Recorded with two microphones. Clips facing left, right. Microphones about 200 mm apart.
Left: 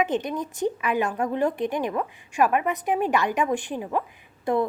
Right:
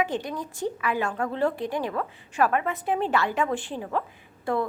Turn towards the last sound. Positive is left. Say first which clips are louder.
# left 3 dB
turn(degrees=20)  # may be behind; listen again after turning